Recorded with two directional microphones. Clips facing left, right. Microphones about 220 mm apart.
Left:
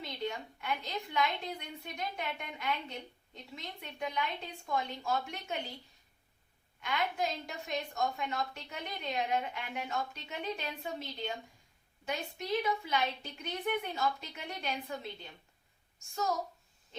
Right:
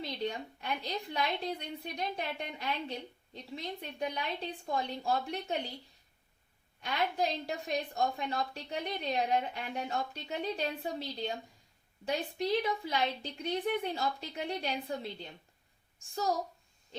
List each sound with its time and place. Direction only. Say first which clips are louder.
0.0 s a woman's voice: right 2 dB; 35° right (ahead or behind)
6.8 s a woman's voice: right 2 dB; 35° right (ahead or behind)